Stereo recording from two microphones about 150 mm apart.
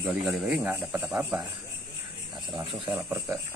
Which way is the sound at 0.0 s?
10° right (ahead or behind).